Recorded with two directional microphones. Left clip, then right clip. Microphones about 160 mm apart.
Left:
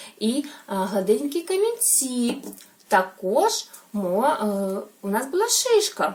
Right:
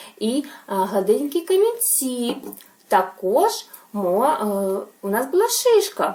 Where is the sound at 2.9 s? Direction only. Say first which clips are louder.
Right 2 dB; 15° left (ahead or behind).